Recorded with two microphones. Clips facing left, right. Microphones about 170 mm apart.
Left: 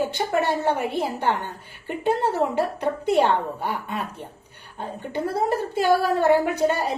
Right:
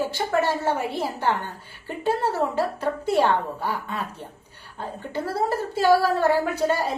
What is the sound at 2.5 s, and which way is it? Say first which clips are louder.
A woman's voice: left 1 dB; 15° left (ahead or behind).